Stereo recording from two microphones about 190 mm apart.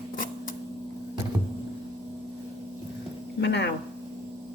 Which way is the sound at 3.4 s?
65° left (ahead or behind).